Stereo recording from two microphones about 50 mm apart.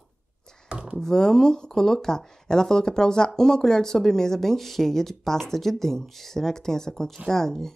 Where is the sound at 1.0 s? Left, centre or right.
Centre.